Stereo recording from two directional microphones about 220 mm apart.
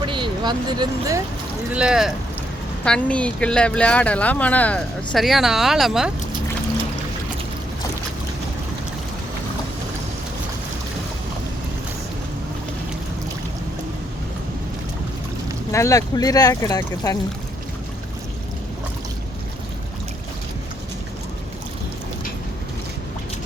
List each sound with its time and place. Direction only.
0.0 s speech: 20° right (ahead or behind)
1.7 s speech: 5° right (ahead or behind)
15.7 s speech: 15° left (ahead or behind)